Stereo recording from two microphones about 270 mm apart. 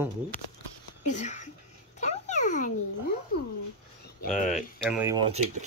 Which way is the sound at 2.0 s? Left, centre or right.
Left.